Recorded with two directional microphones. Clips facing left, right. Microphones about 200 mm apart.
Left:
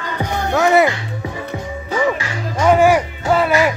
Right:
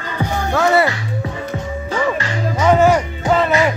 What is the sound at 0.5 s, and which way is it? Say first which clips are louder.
Music: left 2 dB; 15° left (ahead or behind).